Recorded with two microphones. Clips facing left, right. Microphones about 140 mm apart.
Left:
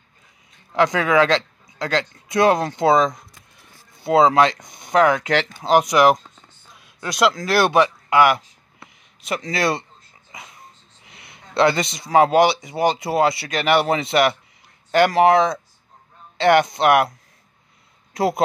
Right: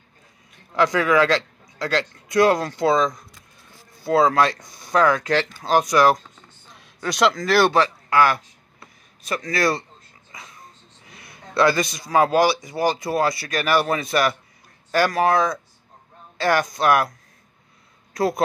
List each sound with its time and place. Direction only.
0.7 s speech: 20° left (ahead or behind)
6.7 s speech: 5° left (ahead or behind); by 9.8 s 25° left (ahead or behind)
11.1 s speech: 20° left (ahead or behind)
18.1 s speech: 25° left (ahead or behind)